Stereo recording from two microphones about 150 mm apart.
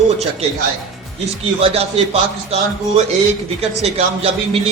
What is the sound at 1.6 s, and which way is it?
Speech, 40° right (ahead or behind).